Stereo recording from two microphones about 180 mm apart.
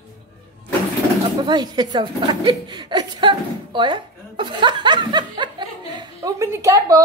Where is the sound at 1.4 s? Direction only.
25° right (ahead or behind).